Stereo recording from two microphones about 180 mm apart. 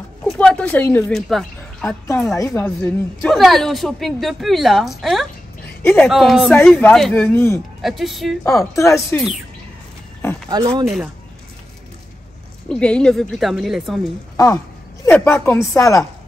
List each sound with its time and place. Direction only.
0.2 s speech: 5° left (ahead or behind)
1.9 s a woman's voice: 15° left (ahead or behind)
7.8 s a woman's voice: centre (ahead or behind)
8.5 s speech: 15° left (ahead or behind)
10.5 s speech: 25° right (ahead or behind)
12.6 s a woman's voice: 5° left (ahead or behind)
14.3 s a sound: 20° left (ahead or behind)
15.0 s speech: 15° left (ahead or behind)